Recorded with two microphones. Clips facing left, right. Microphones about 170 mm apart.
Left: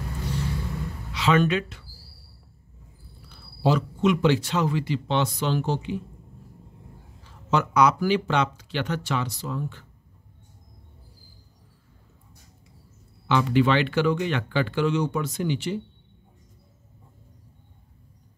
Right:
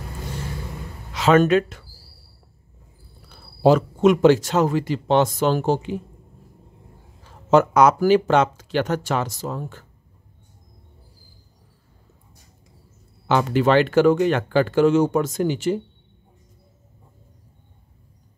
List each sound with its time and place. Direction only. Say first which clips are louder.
0.2 s vehicle: left 2 dB; 50° right (ahead or behind)
1.1 s speech: right 6 dB; 45° right (ahead or behind)
3.3 s speech: right 7 dB; 45° right (ahead or behind)
7.2 s speech: right 9 dB; 50° right (ahead or behind)
13.3 s speech: right 3 dB; 45° right (ahead or behind)